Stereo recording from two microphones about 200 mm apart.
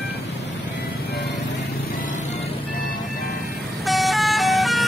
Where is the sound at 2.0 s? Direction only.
40° left (ahead or behind).